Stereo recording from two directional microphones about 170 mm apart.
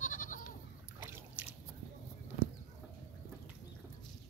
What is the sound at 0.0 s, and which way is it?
Goat, 50° left (ahead or behind).